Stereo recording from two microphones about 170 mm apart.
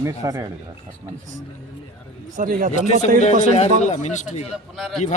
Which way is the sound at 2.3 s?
50° right (ahead or behind).